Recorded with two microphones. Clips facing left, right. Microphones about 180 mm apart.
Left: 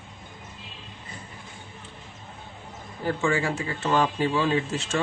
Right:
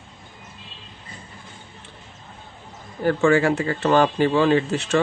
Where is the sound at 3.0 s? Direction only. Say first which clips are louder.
Right 8 dB; 70° right (ahead or behind).